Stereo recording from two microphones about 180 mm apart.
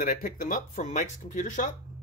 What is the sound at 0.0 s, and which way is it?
Speech, 50° left (ahead or behind).